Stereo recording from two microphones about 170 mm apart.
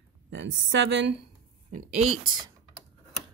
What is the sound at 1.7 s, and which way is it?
Speech, 40° right (ahead or behind).